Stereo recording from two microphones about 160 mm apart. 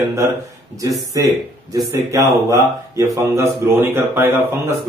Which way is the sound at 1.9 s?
20° right (ahead or behind).